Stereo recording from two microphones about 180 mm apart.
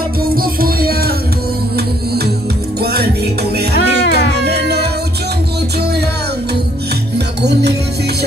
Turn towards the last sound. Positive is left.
turn(degrees=-65)  # may be behind; listen again after turning